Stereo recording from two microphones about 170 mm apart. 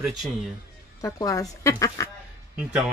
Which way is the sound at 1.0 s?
20° left (ahead or behind).